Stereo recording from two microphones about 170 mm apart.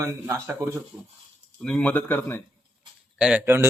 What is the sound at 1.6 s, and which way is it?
Speech, 5° left (ahead or behind).